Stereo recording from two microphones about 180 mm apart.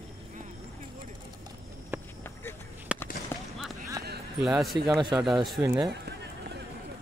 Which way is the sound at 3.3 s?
10° left (ahead or behind).